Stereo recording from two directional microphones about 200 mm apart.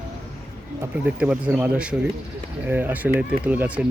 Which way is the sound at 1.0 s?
5° right (ahead or behind).